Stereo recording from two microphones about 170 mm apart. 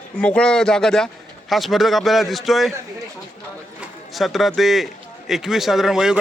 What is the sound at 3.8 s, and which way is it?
A man's voice, centre (ahead or behind).